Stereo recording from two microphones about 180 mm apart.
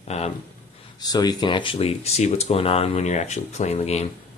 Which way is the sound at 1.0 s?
20° left (ahead or behind).